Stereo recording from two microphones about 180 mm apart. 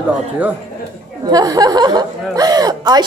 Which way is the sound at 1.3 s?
20° right (ahead or behind).